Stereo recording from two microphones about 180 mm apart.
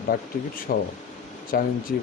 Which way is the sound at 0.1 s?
60° left (ahead or behind).